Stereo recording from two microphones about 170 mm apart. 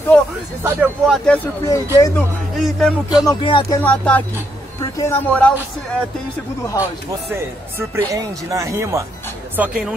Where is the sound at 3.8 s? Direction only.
10° left (ahead or behind).